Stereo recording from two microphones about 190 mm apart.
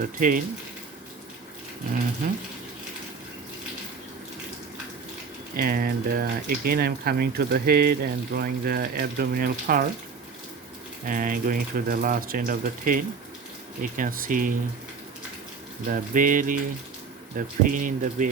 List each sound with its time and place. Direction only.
0.0 s speech: 45° right (ahead or behind)
5.5 s speech: 50° right (ahead or behind)
11.0 s speech: 45° right (ahead or behind)
15.9 s speech: 45° right (ahead or behind)